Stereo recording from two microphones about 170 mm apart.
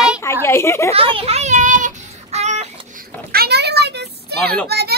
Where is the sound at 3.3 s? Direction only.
70° right (ahead or behind).